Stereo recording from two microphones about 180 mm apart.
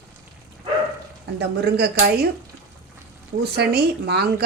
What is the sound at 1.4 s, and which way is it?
Speech, 60° right (ahead or behind).